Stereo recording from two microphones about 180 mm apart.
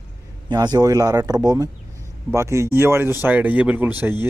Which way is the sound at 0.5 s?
25° right (ahead or behind).